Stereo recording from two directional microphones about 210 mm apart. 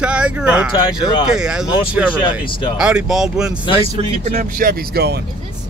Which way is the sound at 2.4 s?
25° left (ahead or behind).